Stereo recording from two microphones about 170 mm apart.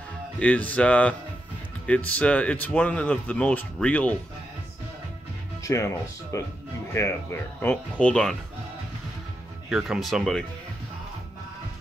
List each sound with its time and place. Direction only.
0.4 s speech: 10° left (ahead or behind)
5.6 s speech: 15° left (ahead or behind)
9.7 s speech: centre (ahead or behind)